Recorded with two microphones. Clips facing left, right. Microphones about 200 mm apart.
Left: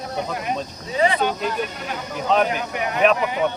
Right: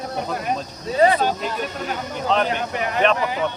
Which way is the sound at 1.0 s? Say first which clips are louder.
Right 3 dB; 40° right (ahead or behind).